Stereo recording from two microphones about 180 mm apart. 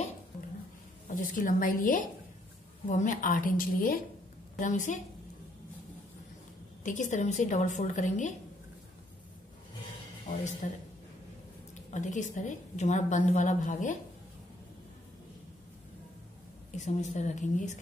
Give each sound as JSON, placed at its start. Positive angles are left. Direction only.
{"t": 1.1, "sound": "a woman's voice", "side_deg": 45}
{"t": 6.8, "sound": "a woman's voice", "side_deg": 45}
{"t": 10.6, "sound": "a woman's voice", "side_deg": 45}
{"t": 11.9, "sound": "a woman's voice", "side_deg": 40}
{"t": 16.7, "sound": "a woman's voice", "side_deg": 40}